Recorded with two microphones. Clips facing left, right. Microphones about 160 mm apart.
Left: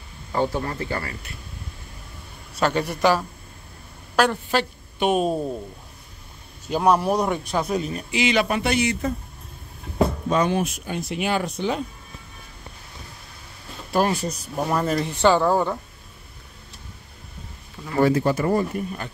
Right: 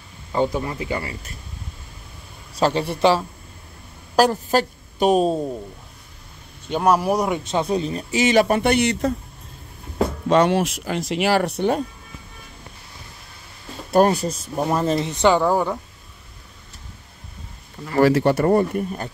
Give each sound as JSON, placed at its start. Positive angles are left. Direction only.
{"t": 0.3, "sound": "speech", "side_deg": -15}
{"t": 2.5, "sound": "a man's voice", "side_deg": -30}
{"t": 4.2, "sound": "a woman's voice", "side_deg": -40}
{"t": 6.7, "sound": "speech", "side_deg": -5}
{"t": 7.4, "sound": "speech", "side_deg": -25}
{"t": 10.2, "sound": "speech", "side_deg": -75}
{"t": 14.0, "sound": "speech", "side_deg": -50}
{"t": 14.6, "sound": "speech", "side_deg": -25}
{"t": 17.9, "sound": "speech", "side_deg": -75}